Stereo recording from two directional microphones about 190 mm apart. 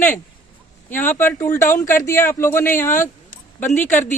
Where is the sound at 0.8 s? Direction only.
10° left (ahead or behind).